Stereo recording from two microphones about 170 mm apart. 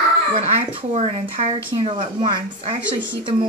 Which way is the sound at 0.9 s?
40° right (ahead or behind).